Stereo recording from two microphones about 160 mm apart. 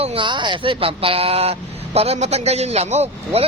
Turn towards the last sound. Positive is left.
turn(degrees=-40)  # may be behind; listen again after turning